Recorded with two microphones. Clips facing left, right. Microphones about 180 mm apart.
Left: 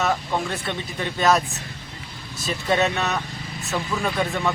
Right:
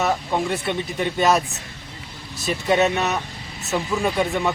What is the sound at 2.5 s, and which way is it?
Speech, 15° right (ahead or behind).